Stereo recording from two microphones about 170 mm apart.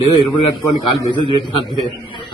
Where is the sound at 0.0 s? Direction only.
30° left (ahead or behind).